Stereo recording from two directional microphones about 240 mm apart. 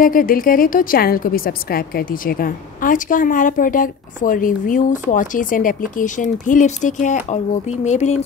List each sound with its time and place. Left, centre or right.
0.0 s a woman's voice: left